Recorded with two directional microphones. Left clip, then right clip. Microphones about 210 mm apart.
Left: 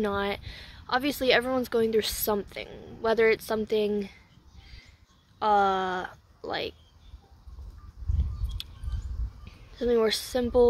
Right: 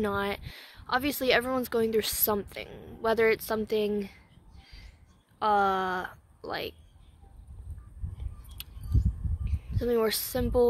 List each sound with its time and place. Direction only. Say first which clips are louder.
0.0 s speech: left 1 dB; 10° left (ahead or behind)
5.4 s speech: left 2 dB; 10° left (ahead or behind)
8.6 s a sound: left 5 dB; 10° left (ahead or behind)
9.4 s speech: left 3 dB; 10° left (ahead or behind)